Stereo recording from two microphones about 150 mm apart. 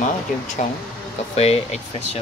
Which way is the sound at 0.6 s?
45° left (ahead or behind).